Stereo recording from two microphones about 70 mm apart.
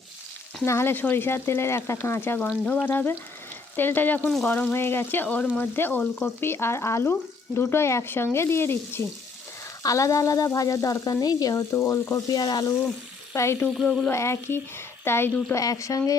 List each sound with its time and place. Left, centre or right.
0.6 s speech: left
4.7 s speech: left
9.8 s frying: left
13.3 s speech: left
13.7 s frying: centre
14.1 s speech: left
15.5 s speech: left